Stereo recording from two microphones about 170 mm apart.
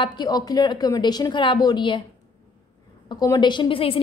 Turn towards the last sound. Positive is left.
turn(degrees=30)  # may be behind; listen again after turning